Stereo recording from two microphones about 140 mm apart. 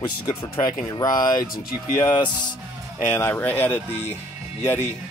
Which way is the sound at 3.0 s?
15° left (ahead or behind).